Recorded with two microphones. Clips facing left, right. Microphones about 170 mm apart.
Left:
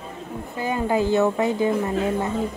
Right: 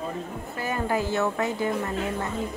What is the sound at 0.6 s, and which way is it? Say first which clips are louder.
Speech: left 5 dB; 20° left (ahead or behind).